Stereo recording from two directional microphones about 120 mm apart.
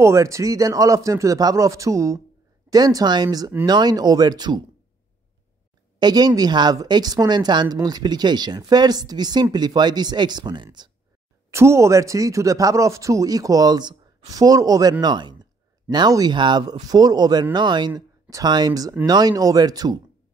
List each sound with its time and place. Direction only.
0.0 s a man's voice: 25° right (ahead or behind)
5.9 s a woman's voice: 35° right (ahead or behind)
11.5 s a man's voice: 25° right (ahead or behind)